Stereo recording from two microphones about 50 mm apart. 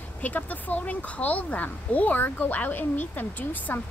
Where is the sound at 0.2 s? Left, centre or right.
Left.